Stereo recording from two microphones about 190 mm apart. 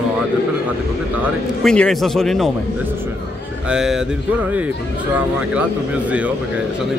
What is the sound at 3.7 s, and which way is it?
Speech, 5° right (ahead or behind).